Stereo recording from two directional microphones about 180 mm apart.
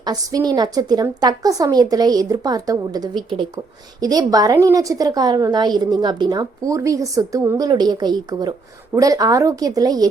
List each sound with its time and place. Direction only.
0.0 s a woman's voice: 20° right (ahead or behind)